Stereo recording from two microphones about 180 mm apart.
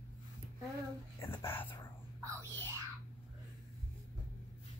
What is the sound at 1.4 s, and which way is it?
Speech, 10° left (ahead or behind).